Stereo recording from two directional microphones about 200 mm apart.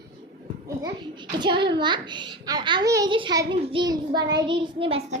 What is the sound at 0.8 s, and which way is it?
A child's voice, 20° right (ahead or behind).